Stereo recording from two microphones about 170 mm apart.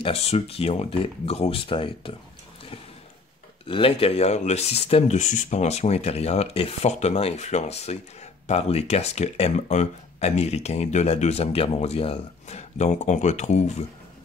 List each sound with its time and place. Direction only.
0.0 s speech: 35° left (ahead or behind)
3.6 s speech: 30° left (ahead or behind)